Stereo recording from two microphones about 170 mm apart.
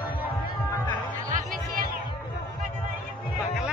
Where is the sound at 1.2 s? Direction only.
55° right (ahead or behind).